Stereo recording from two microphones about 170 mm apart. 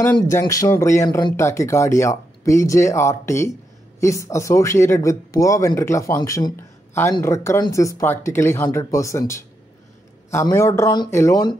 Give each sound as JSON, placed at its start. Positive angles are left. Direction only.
{"t": 0.0, "sound": "speech", "side_deg": 15}